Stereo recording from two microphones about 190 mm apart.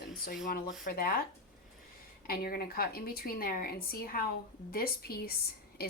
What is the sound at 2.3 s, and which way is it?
Speech, 50° left (ahead or behind).